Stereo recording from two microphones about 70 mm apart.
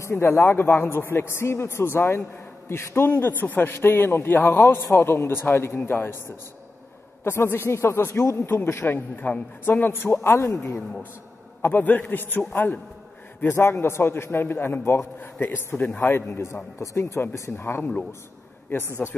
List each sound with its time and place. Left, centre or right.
0.0 s a man's voice: left
11.6 s a man's voice: left
17.2 s a man's voice: left